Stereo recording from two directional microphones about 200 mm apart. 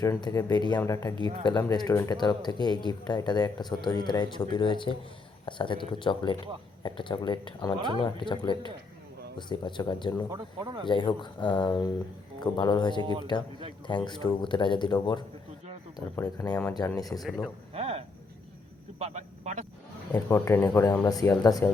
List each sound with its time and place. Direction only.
0.0 s speech: 20° left (ahead or behind)
10.3 s speech: 20° right (ahead or behind)
10.8 s speech: 25° left (ahead or behind)
17.2 s speech: centre (ahead or behind)
17.7 s a sound: 30° right (ahead or behind)
18.9 s speech: 35° right (ahead or behind)
20.1 s speech: 15° left (ahead or behind)